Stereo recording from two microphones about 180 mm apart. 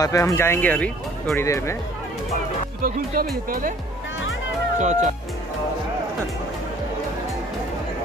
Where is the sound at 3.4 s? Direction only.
50° right (ahead or behind).